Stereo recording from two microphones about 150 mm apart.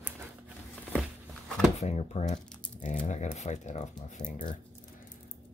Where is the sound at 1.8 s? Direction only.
45° left (ahead or behind).